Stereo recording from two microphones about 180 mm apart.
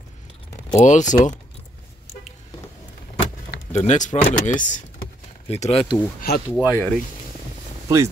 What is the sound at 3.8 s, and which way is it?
Speech, 40° left (ahead or behind).